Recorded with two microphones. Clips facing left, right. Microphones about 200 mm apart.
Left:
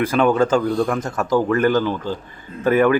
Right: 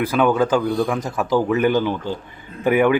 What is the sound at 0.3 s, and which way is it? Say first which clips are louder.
Speech: left 1 dB; 5° right (ahead or behind).